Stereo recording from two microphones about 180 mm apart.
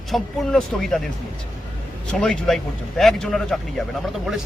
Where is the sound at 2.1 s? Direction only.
5° left (ahead or behind).